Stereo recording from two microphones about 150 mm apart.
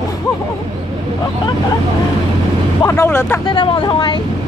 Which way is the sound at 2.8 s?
15° left (ahead or behind).